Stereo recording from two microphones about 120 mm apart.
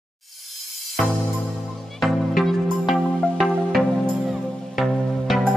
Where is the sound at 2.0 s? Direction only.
Centre (ahead or behind).